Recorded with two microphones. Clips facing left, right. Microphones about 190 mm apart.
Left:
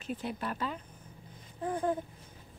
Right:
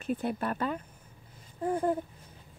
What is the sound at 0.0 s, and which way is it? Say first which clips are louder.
Speech: right 5 dB; 55° right (ahead or behind).